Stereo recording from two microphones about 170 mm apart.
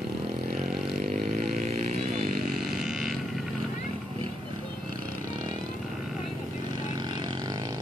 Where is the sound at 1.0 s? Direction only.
40° right (ahead or behind).